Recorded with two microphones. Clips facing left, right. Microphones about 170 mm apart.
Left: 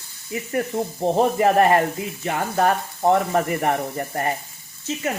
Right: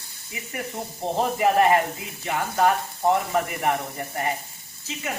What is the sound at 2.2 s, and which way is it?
Sizzle, 30° left (ahead or behind).